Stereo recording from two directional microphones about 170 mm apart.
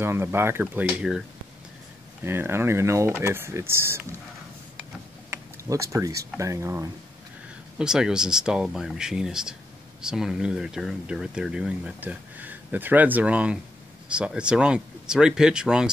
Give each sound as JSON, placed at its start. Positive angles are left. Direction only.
{"t": 0.0, "sound": "speech", "side_deg": -15}
{"t": 2.2, "sound": "speech", "side_deg": -15}
{"t": 5.7, "sound": "speech", "side_deg": -20}
{"t": 7.8, "sound": "speech", "side_deg": -5}